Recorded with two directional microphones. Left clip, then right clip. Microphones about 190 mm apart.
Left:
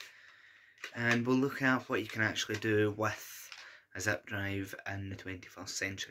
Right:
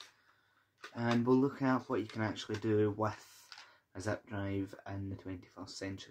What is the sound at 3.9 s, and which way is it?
Speech, 5° right (ahead or behind).